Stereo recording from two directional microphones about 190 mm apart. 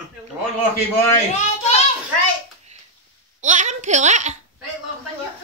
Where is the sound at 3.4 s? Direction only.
40° right (ahead or behind).